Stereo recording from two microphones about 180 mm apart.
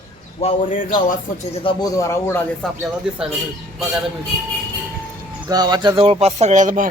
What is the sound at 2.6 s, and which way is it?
Speech, 5° left (ahead or behind).